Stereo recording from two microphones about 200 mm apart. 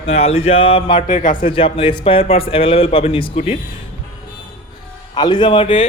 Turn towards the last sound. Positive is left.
turn(degrees=25)  # may be behind; listen again after turning